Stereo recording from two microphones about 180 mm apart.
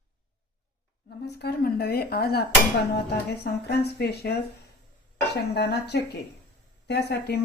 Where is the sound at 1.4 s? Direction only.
60° left (ahead or behind).